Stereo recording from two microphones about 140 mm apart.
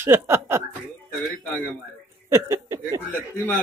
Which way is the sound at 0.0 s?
15° right (ahead or behind).